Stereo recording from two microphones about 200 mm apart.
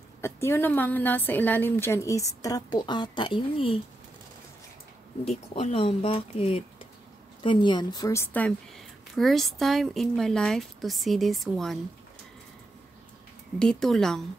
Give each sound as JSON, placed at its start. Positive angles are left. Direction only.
{"t": 0.2, "sound": "a woman's voice", "side_deg": 10}
{"t": 5.2, "sound": "a woman's voice", "side_deg": 30}
{"t": 13.6, "sound": "speech", "side_deg": 0}